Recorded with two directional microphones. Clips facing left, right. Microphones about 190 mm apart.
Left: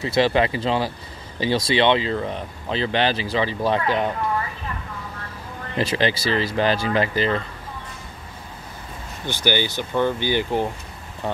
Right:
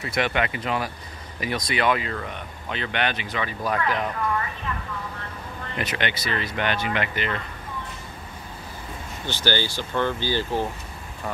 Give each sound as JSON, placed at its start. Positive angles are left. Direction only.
{"t": 0.0, "sound": "speech", "side_deg": 30}
{"t": 5.8, "sound": "speech", "side_deg": 30}
{"t": 9.2, "sound": "speech", "side_deg": 15}